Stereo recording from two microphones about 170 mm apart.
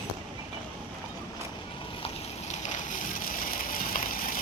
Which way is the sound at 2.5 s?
45° left (ahead or behind).